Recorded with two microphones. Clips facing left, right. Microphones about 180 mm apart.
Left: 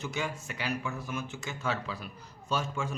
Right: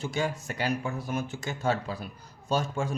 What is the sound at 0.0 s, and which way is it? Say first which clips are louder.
Speech: right 5 dB; 30° right (ahead or behind).